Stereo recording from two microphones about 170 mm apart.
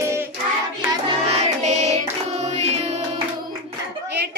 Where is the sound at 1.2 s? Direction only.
40° right (ahead or behind).